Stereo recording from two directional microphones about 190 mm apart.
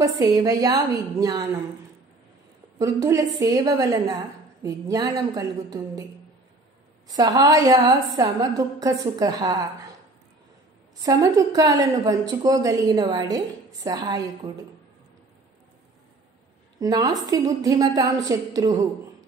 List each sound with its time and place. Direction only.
0.0 s a woman's voice: 20° right (ahead or behind)
2.8 s a woman's voice: 15° right (ahead or behind)
7.1 s a woman's voice: 20° right (ahead or behind)
11.0 s a woman's voice: 20° right (ahead or behind)
16.8 s a woman's voice: 20° right (ahead or behind)